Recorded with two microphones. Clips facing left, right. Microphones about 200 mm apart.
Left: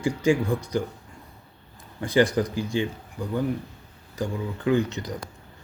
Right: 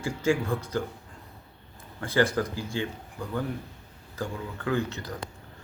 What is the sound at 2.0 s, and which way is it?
Speech, 15° left (ahead or behind).